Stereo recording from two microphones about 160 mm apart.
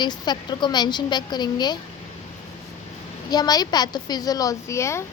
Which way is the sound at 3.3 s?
25° left (ahead or behind).